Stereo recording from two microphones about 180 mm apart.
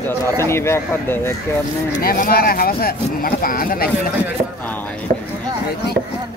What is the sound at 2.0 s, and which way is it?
Speech, 55° left (ahead or behind).